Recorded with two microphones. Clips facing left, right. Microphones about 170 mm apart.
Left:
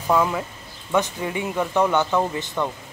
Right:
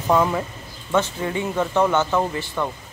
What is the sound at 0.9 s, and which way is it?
Speech, 15° left (ahead or behind).